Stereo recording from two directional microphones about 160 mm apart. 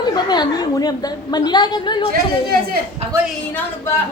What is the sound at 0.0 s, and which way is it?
A woman's voice, 25° left (ahead or behind).